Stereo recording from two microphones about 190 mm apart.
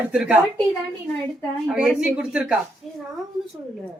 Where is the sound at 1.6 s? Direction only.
5° right (ahead or behind).